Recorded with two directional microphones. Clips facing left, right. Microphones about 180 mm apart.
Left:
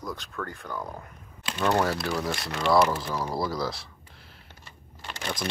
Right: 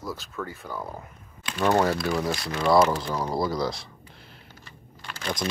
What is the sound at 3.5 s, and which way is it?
Speech, centre (ahead or behind).